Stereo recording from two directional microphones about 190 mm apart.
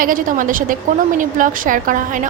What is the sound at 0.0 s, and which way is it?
A woman's voice, 45° right (ahead or behind).